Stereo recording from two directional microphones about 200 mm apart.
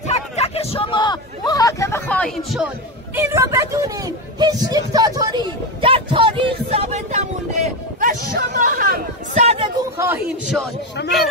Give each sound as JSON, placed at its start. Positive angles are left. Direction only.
{"t": 0.1, "sound": "hubbub", "side_deg": 30}
{"t": 3.2, "sound": "speech", "side_deg": -15}
{"t": 4.4, "sound": "a sound", "side_deg": -20}
{"t": 11.0, "sound": "speech", "side_deg": 60}